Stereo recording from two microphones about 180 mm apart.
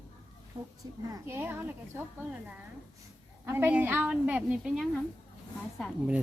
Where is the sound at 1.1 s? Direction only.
15° right (ahead or behind).